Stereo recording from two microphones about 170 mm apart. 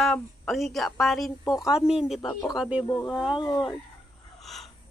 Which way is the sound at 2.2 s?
20° left (ahead or behind).